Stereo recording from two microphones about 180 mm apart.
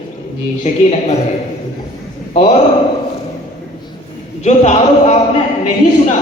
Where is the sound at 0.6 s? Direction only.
35° left (ahead or behind).